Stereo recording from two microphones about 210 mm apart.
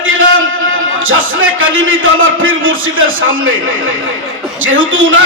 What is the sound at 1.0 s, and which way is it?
A man's voice, 70° right (ahead or behind).